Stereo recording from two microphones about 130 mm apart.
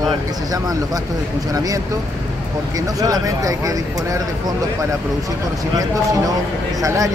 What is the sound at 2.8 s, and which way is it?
Speech, 25° right (ahead or behind).